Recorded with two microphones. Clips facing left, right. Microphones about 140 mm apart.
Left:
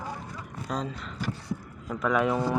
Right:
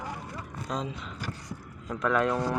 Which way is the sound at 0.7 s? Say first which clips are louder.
Left 1 dB; centre (ahead or behind).